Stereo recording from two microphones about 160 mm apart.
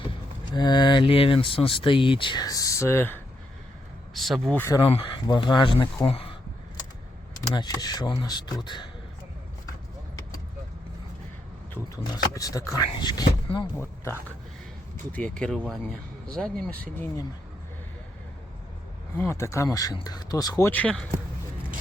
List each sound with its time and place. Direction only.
0.5 s speech: 30° left (ahead or behind)
4.1 s speech: centre (ahead or behind)
4.8 s speech: 35° left (ahead or behind)
7.5 s speech: 25° left (ahead or behind)
12.1 s speech: 20° left (ahead or behind)
13.7 s speech: 15° left (ahead or behind)
19.1 s speech: 15° left (ahead or behind)